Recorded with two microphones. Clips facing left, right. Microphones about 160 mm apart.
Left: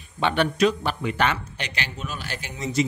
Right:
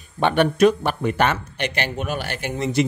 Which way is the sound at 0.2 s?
50° right (ahead or behind).